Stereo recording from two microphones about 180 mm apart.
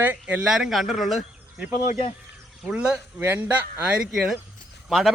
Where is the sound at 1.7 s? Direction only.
40° left (ahead or behind).